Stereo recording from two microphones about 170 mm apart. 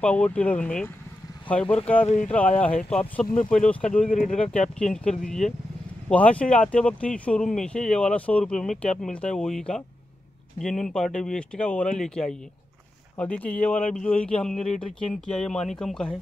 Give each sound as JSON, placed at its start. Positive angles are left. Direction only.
{"t": 0.0, "sound": "speech", "side_deg": 5}
{"t": 2.0, "sound": "speech", "side_deg": 45}
{"t": 2.3, "sound": "speech", "side_deg": 10}
{"t": 4.1, "sound": "speech", "side_deg": 50}
{"t": 4.4, "sound": "speech", "side_deg": 5}